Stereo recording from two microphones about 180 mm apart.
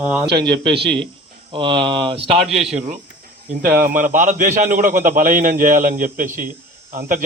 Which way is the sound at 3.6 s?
55° right (ahead or behind).